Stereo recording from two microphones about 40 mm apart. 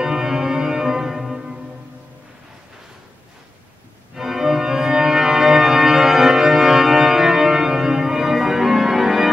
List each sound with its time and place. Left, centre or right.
0.0 s organ: centre
4.1 s organ: centre